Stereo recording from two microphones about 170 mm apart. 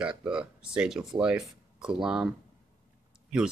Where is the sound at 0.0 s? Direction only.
5° right (ahead or behind).